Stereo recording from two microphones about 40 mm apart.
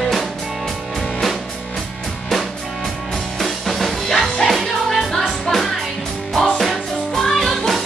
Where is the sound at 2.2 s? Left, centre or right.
Centre.